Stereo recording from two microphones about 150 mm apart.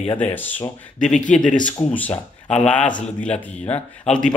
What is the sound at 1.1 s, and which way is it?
Speech, 55° left (ahead or behind).